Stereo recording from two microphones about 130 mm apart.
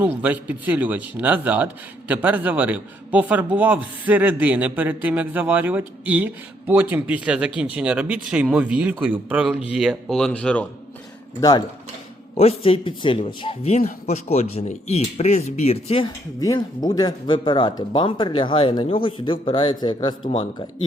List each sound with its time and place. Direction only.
0.0 s speech: 10° right (ahead or behind); by 10.7 s 10° left (ahead or behind)
11.3 s speech: 30° left (ahead or behind)
12.3 s speech: 50° left (ahead or behind)
16.0 s speech: 30° left (ahead or behind)